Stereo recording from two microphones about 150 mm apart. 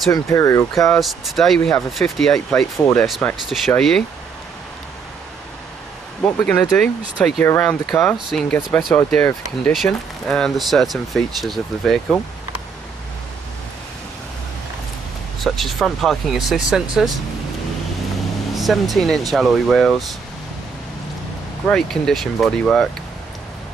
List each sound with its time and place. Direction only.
0.1 s speech: 20° left (ahead or behind)
0.8 s speech: centre (ahead or behind)
6.2 s speech: 5° left (ahead or behind)
15.4 s speech: centre (ahead or behind)
18.5 s speech: centre (ahead or behind)
21.6 s speech: 5° left (ahead or behind)